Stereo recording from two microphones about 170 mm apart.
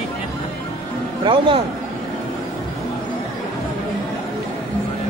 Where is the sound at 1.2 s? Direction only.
30° right (ahead or behind).